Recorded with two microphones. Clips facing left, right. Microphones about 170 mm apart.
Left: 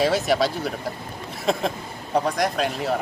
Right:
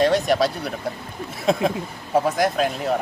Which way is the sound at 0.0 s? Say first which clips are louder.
Right 2 dB; centre (ahead or behind).